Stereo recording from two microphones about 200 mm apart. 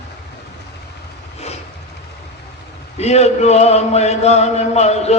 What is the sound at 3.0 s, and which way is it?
Chant, 35° left (ahead or behind).